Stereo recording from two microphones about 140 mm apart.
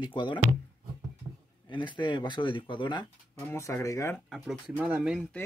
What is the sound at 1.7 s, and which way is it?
Speech, 35° left (ahead or behind).